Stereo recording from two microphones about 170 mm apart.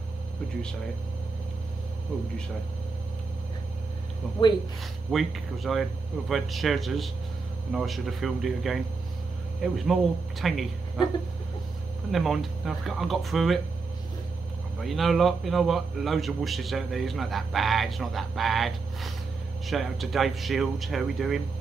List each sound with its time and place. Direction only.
5.1 s a man's voice: centre (ahead or behind)
12.1 s a man's voice: centre (ahead or behind)
14.8 s a man's voice: centre (ahead or behind)